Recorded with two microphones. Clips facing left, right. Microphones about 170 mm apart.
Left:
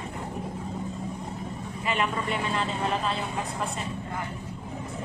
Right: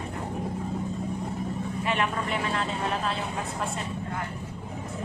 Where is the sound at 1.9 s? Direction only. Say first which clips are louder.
Left 1 dB; centre (ahead or behind).